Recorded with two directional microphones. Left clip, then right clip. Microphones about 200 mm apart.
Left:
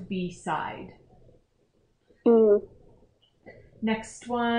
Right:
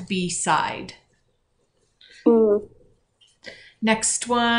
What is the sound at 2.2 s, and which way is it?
Speech, 25° left (ahead or behind).